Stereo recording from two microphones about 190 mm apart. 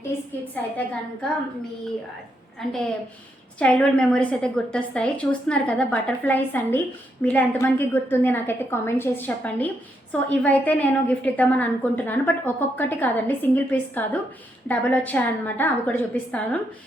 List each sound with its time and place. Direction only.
2.6 s a woman's voice: centre (ahead or behind)